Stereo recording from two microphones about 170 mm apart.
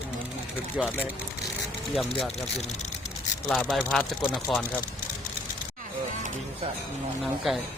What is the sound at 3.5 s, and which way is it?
Speech, 5° left (ahead or behind).